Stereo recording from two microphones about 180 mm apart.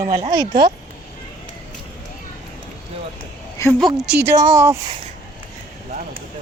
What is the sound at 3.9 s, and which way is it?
Speech, 5° right (ahead or behind).